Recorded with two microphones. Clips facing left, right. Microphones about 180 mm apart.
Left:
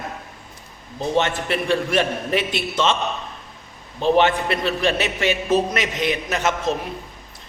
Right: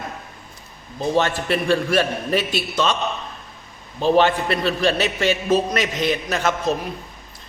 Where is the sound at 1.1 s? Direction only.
20° left (ahead or behind).